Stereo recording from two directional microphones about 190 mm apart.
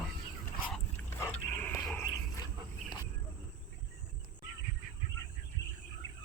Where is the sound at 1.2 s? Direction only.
10° left (ahead or behind).